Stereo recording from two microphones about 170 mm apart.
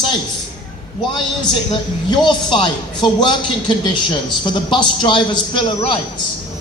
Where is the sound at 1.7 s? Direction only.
25° left (ahead or behind).